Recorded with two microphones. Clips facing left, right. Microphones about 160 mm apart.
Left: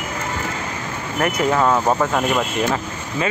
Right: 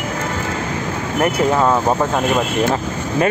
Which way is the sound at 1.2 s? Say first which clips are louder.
Right 3 dB; 30° right (ahead or behind).